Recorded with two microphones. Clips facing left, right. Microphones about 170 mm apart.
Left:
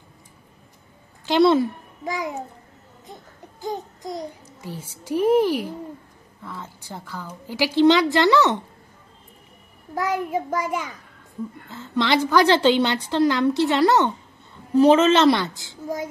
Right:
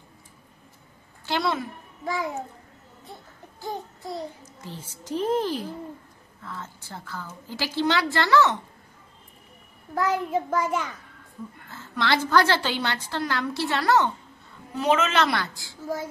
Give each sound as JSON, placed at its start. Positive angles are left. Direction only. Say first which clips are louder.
{"t": 1.4, "sound": "a woman's voice", "louder": "left 13 dB", "side_deg": 30}
{"t": 2.0, "sound": "a woman's voice", "louder": "left 1 dB", "side_deg": 15}
{"t": 3.6, "sound": "a child's voice", "louder": "left 4 dB", "side_deg": 15}
{"t": 9.9, "sound": "a woman's voice", "louder": "left 1 dB", "side_deg": 10}
{"t": 14.8, "sound": "a woman's voice", "louder": "left 8 dB", "side_deg": 30}